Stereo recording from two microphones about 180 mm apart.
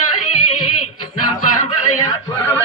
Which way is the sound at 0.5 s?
25° left (ahead or behind).